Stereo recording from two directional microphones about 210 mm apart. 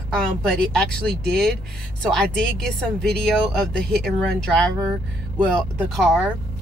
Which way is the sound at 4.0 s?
5° left (ahead or behind).